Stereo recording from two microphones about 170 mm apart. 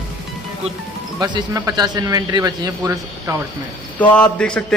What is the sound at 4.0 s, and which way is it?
Speech, 10° left (ahead or behind).